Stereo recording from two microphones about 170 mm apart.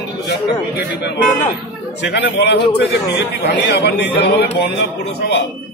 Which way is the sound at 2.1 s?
80° left.